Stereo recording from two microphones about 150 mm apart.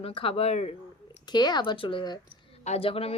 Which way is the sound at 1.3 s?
30° left (ahead or behind).